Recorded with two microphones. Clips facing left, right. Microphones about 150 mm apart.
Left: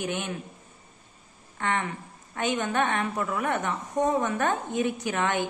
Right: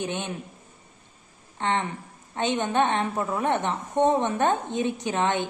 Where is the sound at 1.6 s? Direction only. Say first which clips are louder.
Right 2 dB; 25° right (ahead or behind).